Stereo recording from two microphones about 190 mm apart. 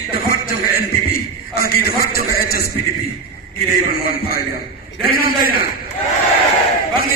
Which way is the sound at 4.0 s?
50° left (ahead or behind).